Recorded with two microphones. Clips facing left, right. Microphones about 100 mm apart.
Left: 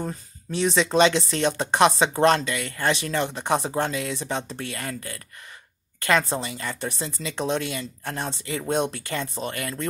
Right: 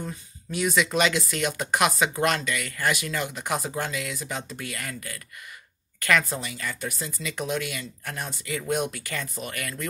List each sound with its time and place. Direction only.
0.0 s speech: 35° left (ahead or behind)